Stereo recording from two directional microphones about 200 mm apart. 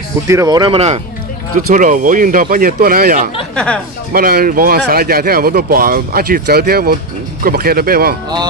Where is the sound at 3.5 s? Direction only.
5° left (ahead or behind).